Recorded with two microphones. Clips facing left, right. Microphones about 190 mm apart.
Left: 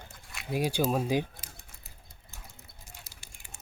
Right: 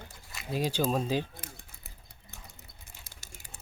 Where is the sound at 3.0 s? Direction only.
45° right (ahead or behind).